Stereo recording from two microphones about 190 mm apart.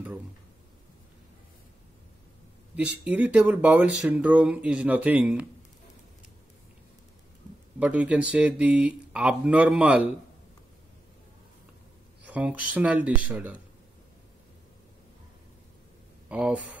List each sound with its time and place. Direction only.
3.0 s speech: 5° right (ahead or behind)
7.8 s speech: 5° right (ahead or behind)
12.3 s speech: 10° right (ahead or behind)
16.3 s speech: 5° right (ahead or behind)